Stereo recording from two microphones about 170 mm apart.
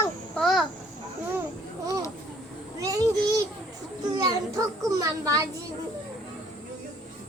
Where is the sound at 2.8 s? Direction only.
20° right (ahead or behind).